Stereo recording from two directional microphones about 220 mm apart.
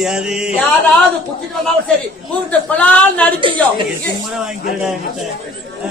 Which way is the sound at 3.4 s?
20° right (ahead or behind).